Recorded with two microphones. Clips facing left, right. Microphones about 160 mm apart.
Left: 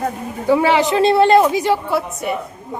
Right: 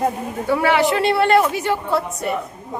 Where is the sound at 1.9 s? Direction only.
Centre (ahead or behind).